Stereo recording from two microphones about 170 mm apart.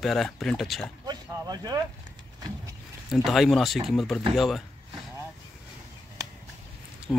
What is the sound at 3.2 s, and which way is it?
Speech, centre (ahead or behind).